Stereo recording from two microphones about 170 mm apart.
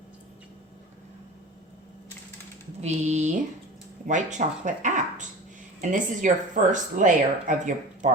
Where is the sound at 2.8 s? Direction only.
45° right (ahead or behind).